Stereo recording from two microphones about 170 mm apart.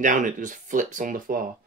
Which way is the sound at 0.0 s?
50° right (ahead or behind).